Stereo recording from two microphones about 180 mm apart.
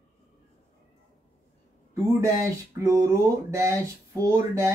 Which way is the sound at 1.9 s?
15° right (ahead or behind).